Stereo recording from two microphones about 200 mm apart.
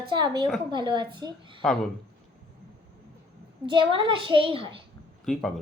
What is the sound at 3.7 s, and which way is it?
A woman's voice, 25° right (ahead or behind).